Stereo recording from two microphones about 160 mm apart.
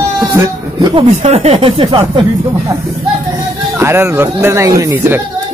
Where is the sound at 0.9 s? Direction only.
40° right (ahead or behind).